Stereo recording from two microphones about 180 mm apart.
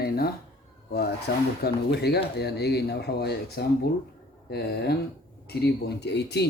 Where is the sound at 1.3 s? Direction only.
75° left (ahead or behind).